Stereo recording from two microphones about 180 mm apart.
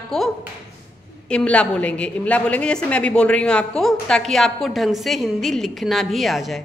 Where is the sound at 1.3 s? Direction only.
5° left (ahead or behind).